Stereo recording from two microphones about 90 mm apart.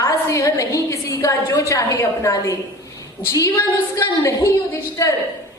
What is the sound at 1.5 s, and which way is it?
A woman's voice, 40° left (ahead or behind).